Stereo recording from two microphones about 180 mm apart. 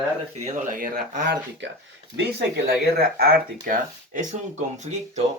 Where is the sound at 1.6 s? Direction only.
85° right.